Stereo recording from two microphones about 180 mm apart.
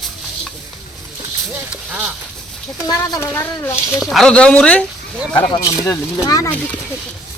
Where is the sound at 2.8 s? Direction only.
20° left (ahead or behind).